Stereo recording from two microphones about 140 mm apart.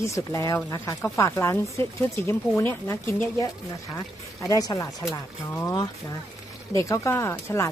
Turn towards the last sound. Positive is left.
turn(degrees=20)  # may be behind; listen again after turning